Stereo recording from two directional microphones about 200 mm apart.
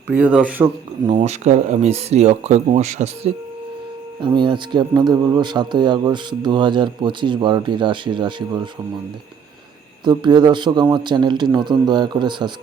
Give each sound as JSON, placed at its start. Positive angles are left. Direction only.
{"t": 0.1, "sound": "speech", "side_deg": -5}
{"t": 1.0, "sound": "speech", "side_deg": -35}
{"t": 4.4, "sound": "speech", "side_deg": -25}
{"t": 10.0, "sound": "speech", "side_deg": -20}